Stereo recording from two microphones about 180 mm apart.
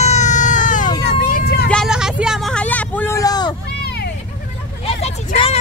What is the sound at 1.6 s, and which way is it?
Vehicle, centre (ahead or behind).